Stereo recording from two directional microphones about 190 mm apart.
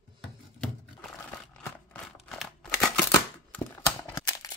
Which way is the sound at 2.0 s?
Centre (ahead or behind).